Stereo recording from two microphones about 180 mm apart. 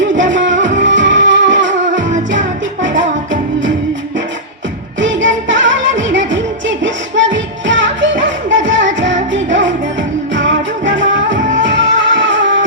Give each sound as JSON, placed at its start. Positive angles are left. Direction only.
{"t": 0.1, "sound": "music", "side_deg": -45}
{"t": 0.8, "sound": "music", "side_deg": -90}
{"t": 4.9, "sound": "music", "side_deg": -90}